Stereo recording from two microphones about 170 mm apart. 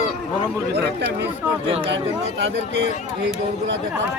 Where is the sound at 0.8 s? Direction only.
80° right.